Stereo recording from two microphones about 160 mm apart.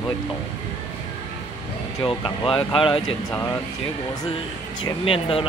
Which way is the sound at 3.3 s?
15° left (ahead or behind).